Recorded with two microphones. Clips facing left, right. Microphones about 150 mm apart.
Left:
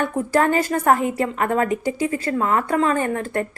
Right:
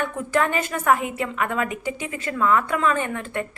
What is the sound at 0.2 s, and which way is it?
A woman's voice, 35° left (ahead or behind).